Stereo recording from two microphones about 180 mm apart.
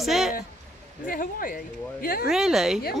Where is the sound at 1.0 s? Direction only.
50° left (ahead or behind).